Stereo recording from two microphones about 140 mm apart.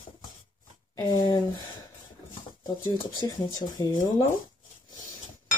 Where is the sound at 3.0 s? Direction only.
25° left (ahead or behind).